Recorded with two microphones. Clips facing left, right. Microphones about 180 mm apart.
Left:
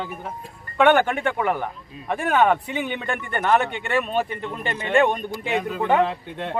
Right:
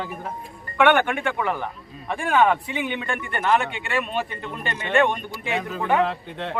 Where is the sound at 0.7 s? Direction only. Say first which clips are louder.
Left 1 dB; 35° left (ahead or behind).